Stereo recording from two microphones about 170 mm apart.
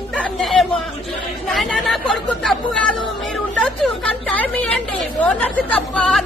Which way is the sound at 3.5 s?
Centre (ahead or behind).